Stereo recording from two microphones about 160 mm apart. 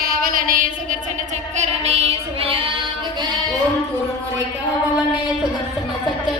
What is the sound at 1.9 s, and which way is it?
Female singing, 40° right (ahead or behind).